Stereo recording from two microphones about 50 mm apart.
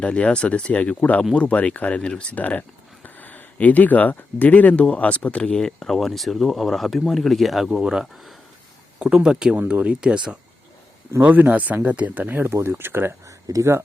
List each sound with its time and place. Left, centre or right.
0.0 s speech: left
2.3 s speech: left; by 8.4 s centre
9.0 s speech: centre
9.6 s speech: right
11.2 s speech: right
12.5 s speech: right
13.2 s a sound: right